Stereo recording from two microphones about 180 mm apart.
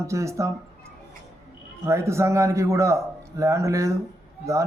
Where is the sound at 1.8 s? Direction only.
15° right (ahead or behind).